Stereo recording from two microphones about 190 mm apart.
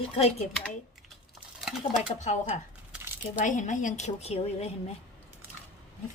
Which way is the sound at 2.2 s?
40° left (ahead or behind).